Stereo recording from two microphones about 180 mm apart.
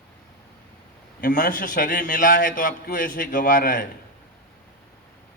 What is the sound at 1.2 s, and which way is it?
A man's voice, 50° left (ahead or behind).